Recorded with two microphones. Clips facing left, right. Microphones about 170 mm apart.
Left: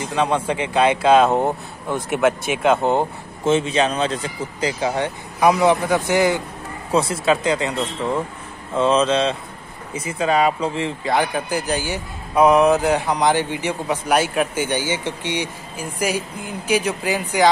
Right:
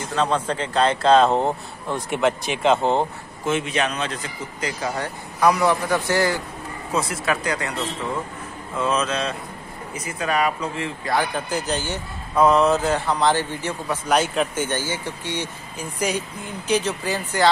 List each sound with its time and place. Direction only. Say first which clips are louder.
0.0 s speech: left 2 dB; 10° left (ahead or behind)
3.4 s speech: left 5 dB; 25° left (ahead or behind)
8.7 s speech: left 6 dB; 30° left (ahead or behind)
11.1 s speech: left 2 dB; 10° left (ahead or behind)